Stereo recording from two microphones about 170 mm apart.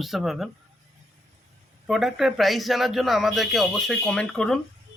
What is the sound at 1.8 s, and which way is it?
Speech, centre (ahead or behind).